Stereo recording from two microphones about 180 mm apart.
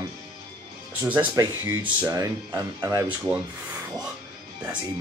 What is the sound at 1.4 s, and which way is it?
Speech, 20° right (ahead or behind).